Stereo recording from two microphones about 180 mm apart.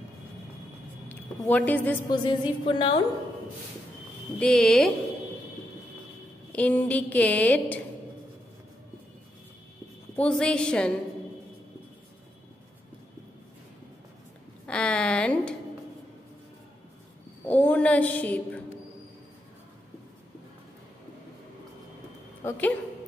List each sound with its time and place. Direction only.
1.0 s a woman's voice: 5° left (ahead or behind)
2.0 s a woman's voice: 25° left (ahead or behind)
4.4 s a woman's voice: 5° left (ahead or behind)
6.5 s a woman's voice: 10° left (ahead or behind)
10.1 s a woman's voice: 5° left (ahead or behind)
14.7 s a woman's voice: 5° left (ahead or behind)
17.5 s a woman's voice: 10° left (ahead or behind)
22.4 s a woman's voice: 10° left (ahead or behind)